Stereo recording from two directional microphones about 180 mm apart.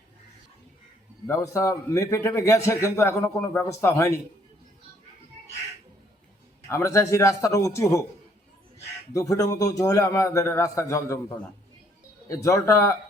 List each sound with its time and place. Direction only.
1.3 s a man's voice: 15° left (ahead or behind)
6.7 s a man's voice: 15° left (ahead or behind)
9.1 s a man's voice: 20° left (ahead or behind)
12.3 s a man's voice: 15° left (ahead or behind)